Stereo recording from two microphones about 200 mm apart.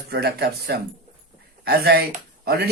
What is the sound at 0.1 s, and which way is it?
Speech, 50° right (ahead or behind).